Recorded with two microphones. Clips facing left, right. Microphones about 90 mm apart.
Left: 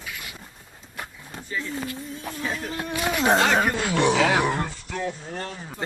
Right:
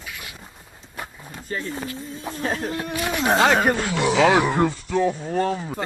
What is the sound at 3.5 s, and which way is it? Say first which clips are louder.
Speech: right 3 dB; 35° right (ahead or behind).